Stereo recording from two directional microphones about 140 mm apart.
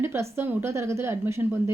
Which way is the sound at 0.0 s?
15° right (ahead or behind).